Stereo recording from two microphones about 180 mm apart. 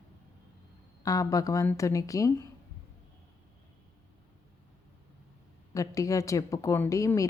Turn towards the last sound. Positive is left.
turn(degrees=20)  # may be behind; listen again after turning